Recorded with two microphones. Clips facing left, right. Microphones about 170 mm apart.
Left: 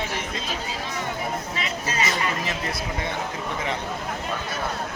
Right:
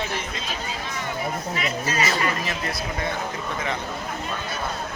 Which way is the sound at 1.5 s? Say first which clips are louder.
Right 2 dB; 25° left (ahead or behind).